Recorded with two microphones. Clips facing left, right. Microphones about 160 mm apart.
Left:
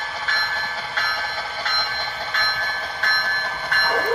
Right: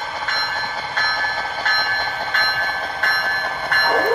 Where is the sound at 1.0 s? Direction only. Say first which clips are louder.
Right 4 dB; 45° right (ahead or behind).